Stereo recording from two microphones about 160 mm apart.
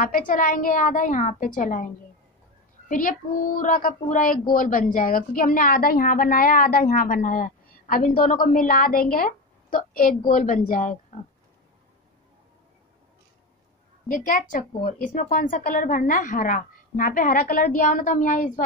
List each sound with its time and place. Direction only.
0.0 s a woman's voice: 60° left (ahead or behind)
2.9 s a woman's voice: 55° left (ahead or behind)
14.1 s a woman's voice: 55° left (ahead or behind)